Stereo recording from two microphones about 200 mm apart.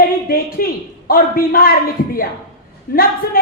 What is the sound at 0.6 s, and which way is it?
Speech, 45° left (ahead or behind).